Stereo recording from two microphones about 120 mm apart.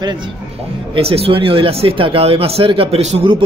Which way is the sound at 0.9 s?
55° right (ahead or behind).